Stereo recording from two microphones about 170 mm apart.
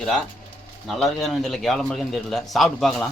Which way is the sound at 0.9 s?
Centre (ahead or behind).